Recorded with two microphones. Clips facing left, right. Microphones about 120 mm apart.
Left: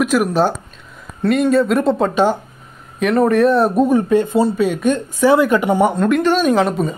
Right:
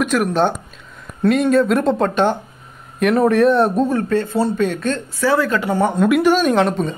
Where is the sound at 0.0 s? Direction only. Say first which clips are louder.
Left 2 dB; 5° left (ahead or behind).